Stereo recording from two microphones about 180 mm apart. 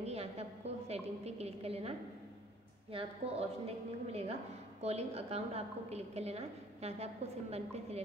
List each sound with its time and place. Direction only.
0.0 s a woman's voice: 35° right (ahead or behind)